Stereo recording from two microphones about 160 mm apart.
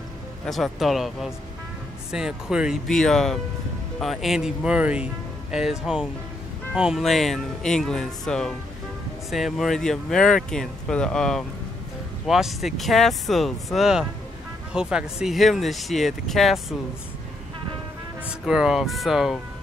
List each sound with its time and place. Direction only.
0.5 s speech: centre (ahead or behind)
18.4 s speech: 5° right (ahead or behind)